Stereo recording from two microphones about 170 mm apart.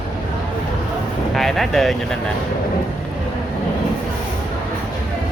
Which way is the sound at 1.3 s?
Centre (ahead or behind).